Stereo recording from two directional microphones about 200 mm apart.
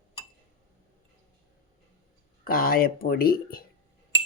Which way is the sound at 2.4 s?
45° left (ahead or behind).